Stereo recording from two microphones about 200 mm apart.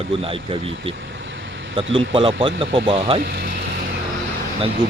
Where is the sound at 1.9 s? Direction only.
25° right (ahead or behind).